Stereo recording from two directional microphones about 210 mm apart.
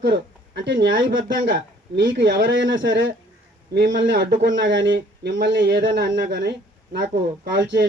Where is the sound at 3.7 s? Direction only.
50° right (ahead or behind).